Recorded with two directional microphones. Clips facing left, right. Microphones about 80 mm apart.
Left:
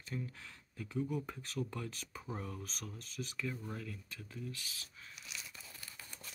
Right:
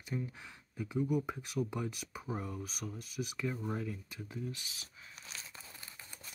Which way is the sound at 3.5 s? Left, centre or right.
Right.